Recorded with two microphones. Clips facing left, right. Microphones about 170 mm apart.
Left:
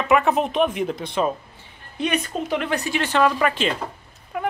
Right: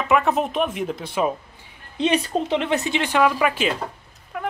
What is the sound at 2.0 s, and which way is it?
A woman's voice, 30° right (ahead or behind).